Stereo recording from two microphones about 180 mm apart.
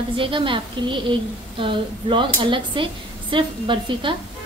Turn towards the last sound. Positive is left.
turn(degrees=-30)  # may be behind; listen again after turning